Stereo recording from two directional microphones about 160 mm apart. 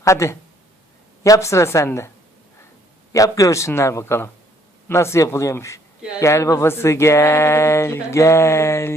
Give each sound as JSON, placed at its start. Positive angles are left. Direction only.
{"t": 0.0, "sound": "speech", "side_deg": 20}
{"t": 3.1, "sound": "speech", "side_deg": 20}